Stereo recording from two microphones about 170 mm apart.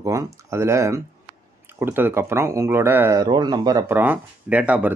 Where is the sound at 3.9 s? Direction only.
10° right (ahead or behind).